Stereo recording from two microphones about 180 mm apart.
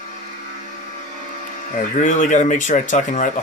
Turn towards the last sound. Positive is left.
turn(degrees=45)  # may be behind; listen again after turning